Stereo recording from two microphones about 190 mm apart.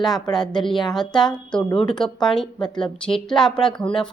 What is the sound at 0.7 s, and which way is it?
A woman's voice, centre (ahead or behind).